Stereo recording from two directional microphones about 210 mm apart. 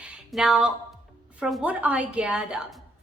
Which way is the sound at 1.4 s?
5° right (ahead or behind).